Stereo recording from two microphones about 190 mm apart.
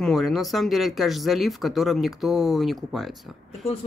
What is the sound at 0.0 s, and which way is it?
Speech, centre (ahead or behind).